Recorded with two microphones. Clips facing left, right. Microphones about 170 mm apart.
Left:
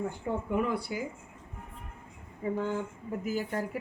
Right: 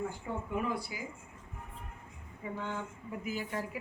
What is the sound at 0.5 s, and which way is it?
Speech, 60° left (ahead or behind).